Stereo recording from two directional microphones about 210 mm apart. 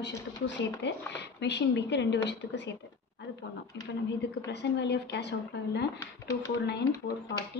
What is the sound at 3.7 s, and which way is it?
A woman's voice, 55° left (ahead or behind).